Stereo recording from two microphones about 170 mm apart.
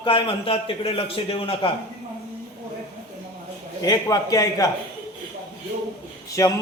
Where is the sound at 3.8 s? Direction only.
20° left (ahead or behind).